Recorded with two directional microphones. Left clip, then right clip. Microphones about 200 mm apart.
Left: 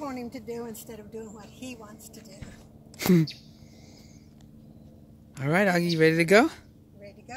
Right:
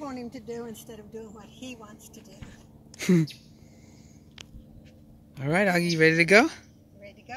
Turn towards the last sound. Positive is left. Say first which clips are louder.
# right 1 dB
turn(degrees=5)  # may be behind; listen again after turning